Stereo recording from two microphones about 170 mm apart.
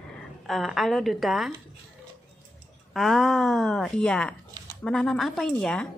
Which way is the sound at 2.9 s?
Centre (ahead or behind).